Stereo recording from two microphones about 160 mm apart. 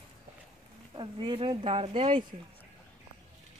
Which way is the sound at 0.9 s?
30° right (ahead or behind).